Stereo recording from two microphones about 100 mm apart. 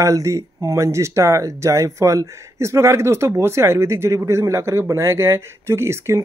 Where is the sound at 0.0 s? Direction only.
30° right (ahead or behind).